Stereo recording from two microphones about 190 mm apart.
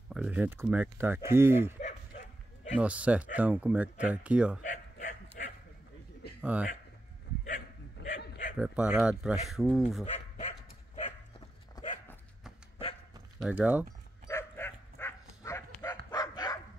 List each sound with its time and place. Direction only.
0.1 s speech: 5° right (ahead or behind)
1.8 s bow-wow: 40° left (ahead or behind)
2.7 s speech: 5° right (ahead or behind)
4.6 s bow-wow: 40° left (ahead or behind)
6.4 s speech: 5° right (ahead or behind)
7.4 s a sound: 45° left (ahead or behind)
8.5 s speech: 5° right (ahead or behind)
10.0 s dog: 35° left (ahead or behind)
13.4 s speech: 10° right (ahead or behind)
14.2 s bow-wow: 15° left (ahead or behind)
16.1 s dog: 20° left (ahead or behind)